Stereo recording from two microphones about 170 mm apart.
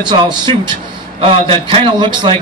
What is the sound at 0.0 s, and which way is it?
A man's voice, 25° right (ahead or behind).